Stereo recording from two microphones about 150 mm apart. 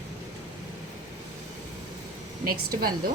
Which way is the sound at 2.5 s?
75° right (ahead or behind).